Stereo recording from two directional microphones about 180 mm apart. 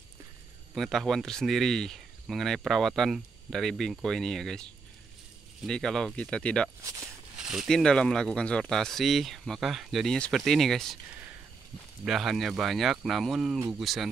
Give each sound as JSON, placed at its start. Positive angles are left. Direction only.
{"t": 0.7, "sound": "speech", "side_deg": 0}
{"t": 5.7, "sound": "speech", "side_deg": 5}
{"t": 6.8, "sound": "speech", "side_deg": -15}
{"t": 7.4, "sound": "speech", "side_deg": 0}
{"t": 12.0, "sound": "speech", "side_deg": 0}